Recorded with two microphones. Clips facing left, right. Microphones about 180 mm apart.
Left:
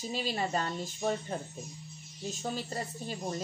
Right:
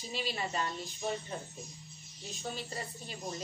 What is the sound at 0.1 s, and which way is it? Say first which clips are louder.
Speech: left 4 dB; 40° left (ahead or behind).